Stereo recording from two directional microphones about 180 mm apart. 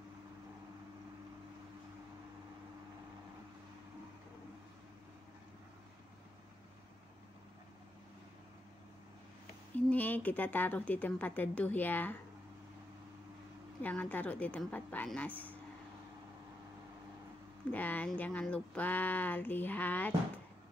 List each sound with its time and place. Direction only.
9.8 s speech: 10° left (ahead or behind)
13.8 s speech: 10° left (ahead or behind)
17.6 s speech: 10° left (ahead or behind)